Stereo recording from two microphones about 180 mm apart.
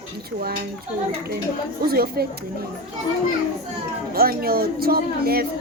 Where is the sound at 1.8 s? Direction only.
55° right (ahead or behind).